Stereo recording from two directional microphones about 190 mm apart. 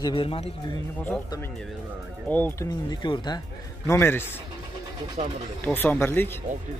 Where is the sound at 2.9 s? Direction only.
25° left (ahead or behind).